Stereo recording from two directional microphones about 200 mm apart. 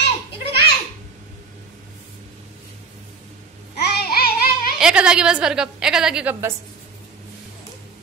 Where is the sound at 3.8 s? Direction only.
50° left (ahead or behind).